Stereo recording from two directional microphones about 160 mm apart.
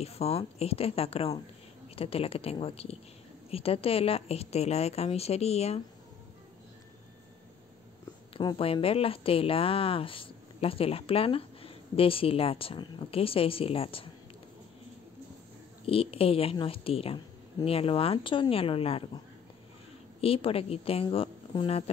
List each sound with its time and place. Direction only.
0.0 s a woman's voice: 40° left (ahead or behind)
8.3 s a woman's voice: 30° left (ahead or behind)
15.8 s a woman's voice: 35° left (ahead or behind)
20.2 s a woman's voice: 35° left (ahead or behind)